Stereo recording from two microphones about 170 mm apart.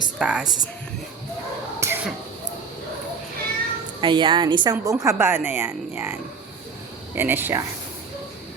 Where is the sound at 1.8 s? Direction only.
15° right (ahead or behind).